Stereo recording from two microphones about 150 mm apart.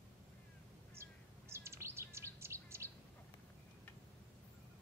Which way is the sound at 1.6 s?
15° right (ahead or behind).